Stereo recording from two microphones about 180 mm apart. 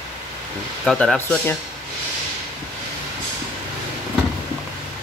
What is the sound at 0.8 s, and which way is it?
Speech, centre (ahead or behind).